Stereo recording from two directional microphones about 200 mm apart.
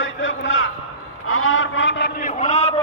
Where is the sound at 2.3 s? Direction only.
35° left (ahead or behind).